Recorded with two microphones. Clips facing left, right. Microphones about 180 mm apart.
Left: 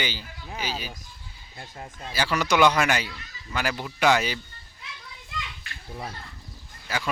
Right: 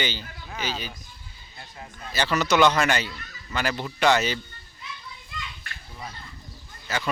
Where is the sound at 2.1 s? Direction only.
10° left (ahead or behind).